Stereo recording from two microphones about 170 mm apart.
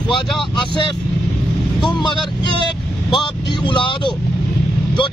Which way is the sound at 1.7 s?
25° left (ahead or behind).